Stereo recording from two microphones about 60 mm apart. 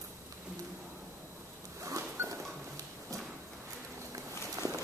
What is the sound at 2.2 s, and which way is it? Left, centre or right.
Dog, right.